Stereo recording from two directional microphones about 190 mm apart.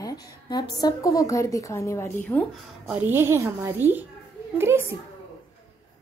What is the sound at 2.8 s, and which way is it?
A woman's voice, 10° right (ahead or behind).